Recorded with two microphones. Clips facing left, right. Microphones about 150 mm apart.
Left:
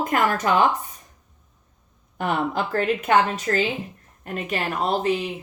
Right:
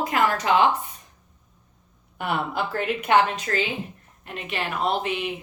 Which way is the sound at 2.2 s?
40° left (ahead or behind).